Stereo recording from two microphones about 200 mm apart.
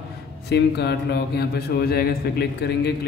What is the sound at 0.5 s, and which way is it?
A man's voice, 55° left (ahead or behind).